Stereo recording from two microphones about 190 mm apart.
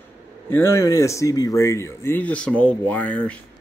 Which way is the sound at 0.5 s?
15° left (ahead or behind).